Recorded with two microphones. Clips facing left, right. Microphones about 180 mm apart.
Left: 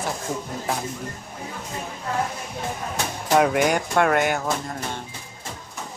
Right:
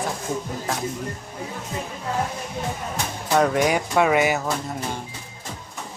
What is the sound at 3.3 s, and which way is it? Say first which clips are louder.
Speech: even; 5° left (ahead or behind).